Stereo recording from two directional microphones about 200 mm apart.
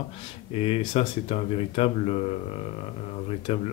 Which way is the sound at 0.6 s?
30° left (ahead or behind).